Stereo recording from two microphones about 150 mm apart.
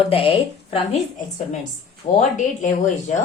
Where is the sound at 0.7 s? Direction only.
50° left (ahead or behind).